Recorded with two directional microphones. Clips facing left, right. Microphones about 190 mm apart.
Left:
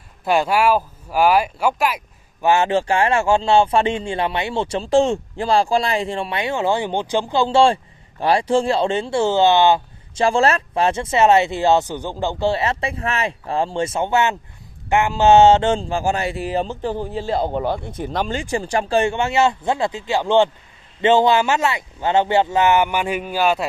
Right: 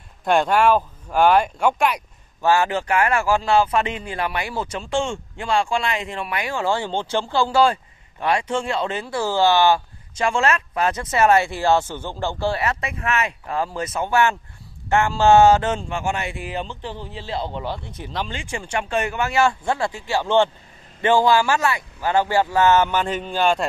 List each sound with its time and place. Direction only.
0.2 s speech: 5° left (ahead or behind)
2.4 s speech: 20° left (ahead or behind)
10.2 s speech: 35° left (ahead or behind); by 23.7 s 5° left (ahead or behind)